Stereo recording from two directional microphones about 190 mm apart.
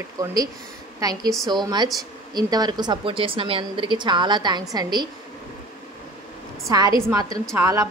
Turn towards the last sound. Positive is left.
turn(degrees=-15)  # may be behind; listen again after turning